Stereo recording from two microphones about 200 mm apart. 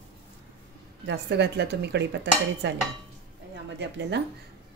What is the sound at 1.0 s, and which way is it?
Speech, 60° right (ahead or behind).